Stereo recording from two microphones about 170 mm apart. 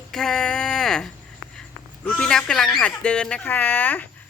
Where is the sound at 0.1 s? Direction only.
5° left (ahead or behind).